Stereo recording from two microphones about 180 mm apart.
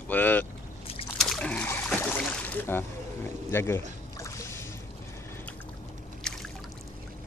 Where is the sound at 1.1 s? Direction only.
Centre (ahead or behind); by 4.7 s 15° left (ahead or behind).